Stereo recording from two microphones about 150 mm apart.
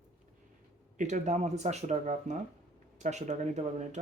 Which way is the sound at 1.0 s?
55° right (ahead or behind).